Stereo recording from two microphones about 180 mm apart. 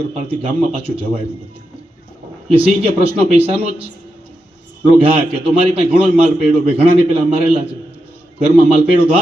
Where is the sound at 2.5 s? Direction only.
30° right (ahead or behind).